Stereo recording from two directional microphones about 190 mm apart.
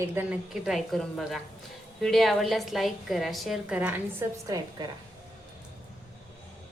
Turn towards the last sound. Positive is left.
turn(degrees=-15)  # may be behind; listen again after turning